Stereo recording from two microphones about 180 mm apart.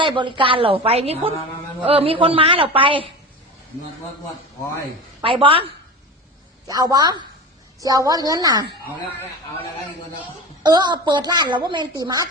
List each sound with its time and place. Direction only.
0.0 s a woman's voice: 25° right (ahead or behind)
5.2 s a woman's voice: 30° right (ahead or behind)
10.6 s a woman's voice: 25° right (ahead or behind)